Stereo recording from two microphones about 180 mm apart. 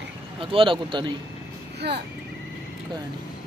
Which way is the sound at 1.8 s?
65° right (ahead or behind).